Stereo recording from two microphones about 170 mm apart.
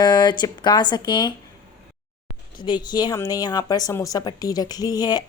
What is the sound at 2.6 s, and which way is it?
Speech, 25° left (ahead or behind).